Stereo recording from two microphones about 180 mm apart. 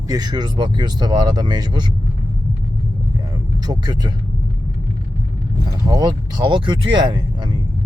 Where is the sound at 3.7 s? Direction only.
25° right (ahead or behind).